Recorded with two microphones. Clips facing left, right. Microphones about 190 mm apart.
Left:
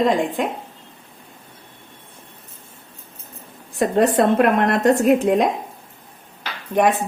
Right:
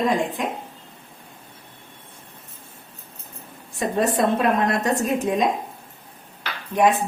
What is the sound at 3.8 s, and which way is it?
Speech, 65° left (ahead or behind).